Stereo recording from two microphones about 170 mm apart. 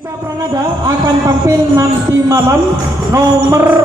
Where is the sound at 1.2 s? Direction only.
20° right (ahead or behind).